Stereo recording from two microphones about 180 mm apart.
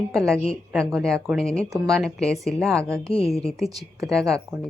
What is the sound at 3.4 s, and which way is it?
Speech, centre (ahead or behind).